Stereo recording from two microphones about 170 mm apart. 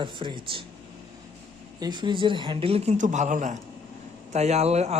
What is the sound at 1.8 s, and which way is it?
Speech, 25° right (ahead or behind).